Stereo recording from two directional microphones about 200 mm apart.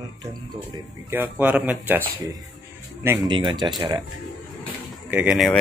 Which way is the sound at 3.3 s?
25° right (ahead or behind).